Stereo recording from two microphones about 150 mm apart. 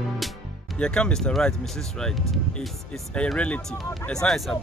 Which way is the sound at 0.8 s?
5° left (ahead or behind).